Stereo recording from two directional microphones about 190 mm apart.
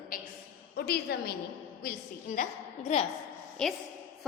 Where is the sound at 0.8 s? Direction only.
55° left (ahead or behind).